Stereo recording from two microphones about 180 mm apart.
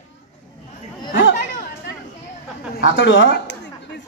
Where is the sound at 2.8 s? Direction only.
90° left.